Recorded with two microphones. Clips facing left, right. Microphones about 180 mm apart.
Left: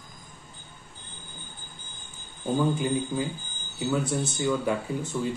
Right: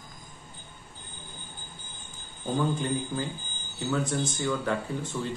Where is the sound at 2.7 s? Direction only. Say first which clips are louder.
Left 3 dB; 10° left (ahead or behind).